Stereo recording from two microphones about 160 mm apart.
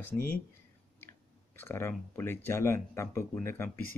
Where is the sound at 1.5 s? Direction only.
15° left (ahead or behind).